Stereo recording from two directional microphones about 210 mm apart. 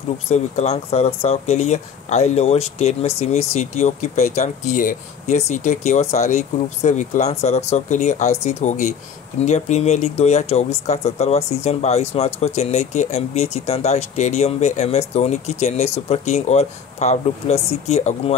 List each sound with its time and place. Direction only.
0.3 s speech: 30° left (ahead or behind)